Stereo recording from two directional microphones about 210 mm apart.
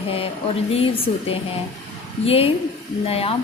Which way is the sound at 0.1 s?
25° left (ahead or behind).